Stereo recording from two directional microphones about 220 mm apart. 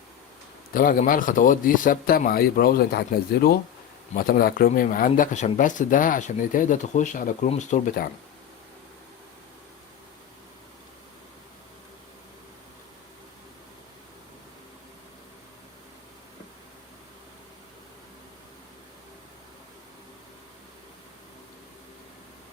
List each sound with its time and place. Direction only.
0.7 s speech: 40° left (ahead or behind)
4.1 s speech: 40° left (ahead or behind)